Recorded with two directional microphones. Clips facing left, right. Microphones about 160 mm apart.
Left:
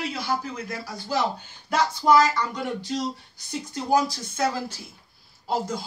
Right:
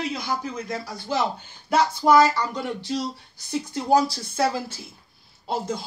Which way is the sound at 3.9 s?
30° right (ahead or behind).